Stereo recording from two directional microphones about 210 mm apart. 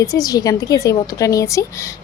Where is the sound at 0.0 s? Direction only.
15° left (ahead or behind).